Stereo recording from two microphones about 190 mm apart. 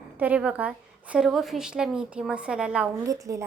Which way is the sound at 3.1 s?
15° right (ahead or behind).